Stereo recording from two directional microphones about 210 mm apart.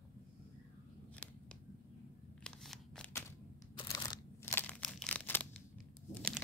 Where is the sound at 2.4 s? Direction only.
Centre (ahead or behind).